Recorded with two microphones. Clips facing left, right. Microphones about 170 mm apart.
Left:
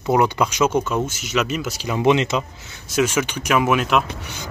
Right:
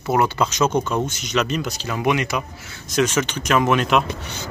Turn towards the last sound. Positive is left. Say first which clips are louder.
# right 1 dB
turn(degrees=10)  # may be behind; listen again after turning